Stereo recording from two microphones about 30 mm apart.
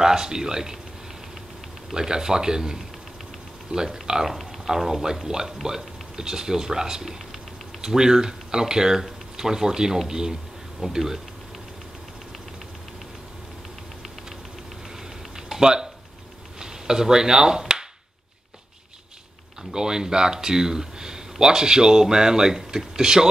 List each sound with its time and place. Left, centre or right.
0.0 s speech: centre
2.0 s speech: right
15.3 s a sound: centre
15.6 s speech: right
19.7 s speech: right